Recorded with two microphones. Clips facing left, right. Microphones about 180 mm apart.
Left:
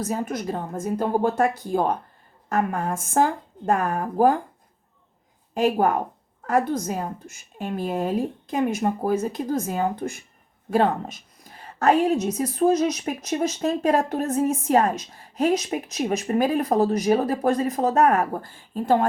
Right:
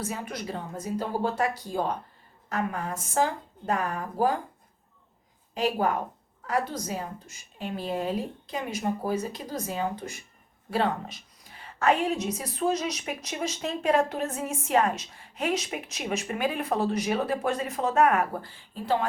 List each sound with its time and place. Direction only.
0.0 s a woman's voice: 40° left (ahead or behind)
5.5 s a woman's voice: 50° left (ahead or behind)